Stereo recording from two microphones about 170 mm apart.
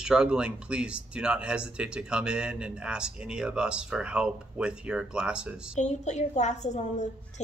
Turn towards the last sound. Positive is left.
turn(degrees=45)  # may be behind; listen again after turning